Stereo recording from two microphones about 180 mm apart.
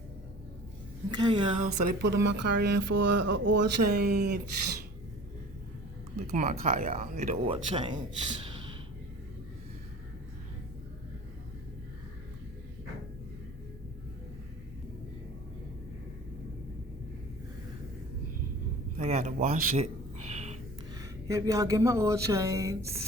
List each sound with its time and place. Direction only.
1.1 s a woman's voice: 25° right (ahead or behind)
1.6 s speech: 55° right (ahead or behind)
6.3 s speech: 45° right (ahead or behind); by 7.9 s 30° right (ahead or behind)
18.9 s a sound: 40° right (ahead or behind)
21.0 s speech: 20° right (ahead or behind)